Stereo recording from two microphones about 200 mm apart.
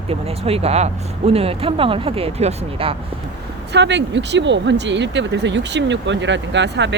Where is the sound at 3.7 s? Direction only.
60° right (ahead or behind).